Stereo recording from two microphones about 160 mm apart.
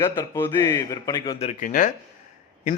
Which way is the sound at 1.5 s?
55° left (ahead or behind).